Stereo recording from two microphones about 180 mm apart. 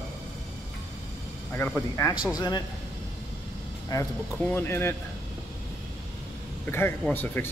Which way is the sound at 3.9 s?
20° left (ahead or behind).